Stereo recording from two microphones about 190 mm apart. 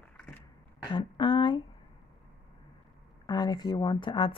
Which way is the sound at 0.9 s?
25° left (ahead or behind).